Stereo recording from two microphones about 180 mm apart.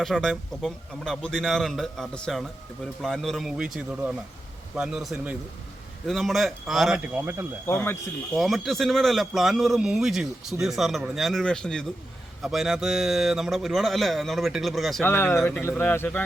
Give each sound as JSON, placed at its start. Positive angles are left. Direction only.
{"t": 0.0, "sound": "speech", "side_deg": 0}
{"t": 7.7, "sound": "speech", "side_deg": 10}
{"t": 8.4, "sound": "speech", "side_deg": 0}
{"t": 15.0, "sound": "speech", "side_deg": 10}